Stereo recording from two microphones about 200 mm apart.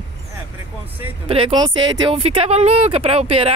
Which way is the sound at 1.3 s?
25° right (ahead or behind).